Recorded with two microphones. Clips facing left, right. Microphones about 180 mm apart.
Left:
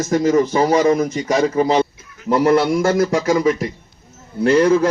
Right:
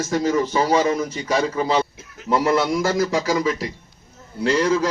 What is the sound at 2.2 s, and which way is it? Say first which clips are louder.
A man's voice: left 5 dB; 55° left (ahead or behind).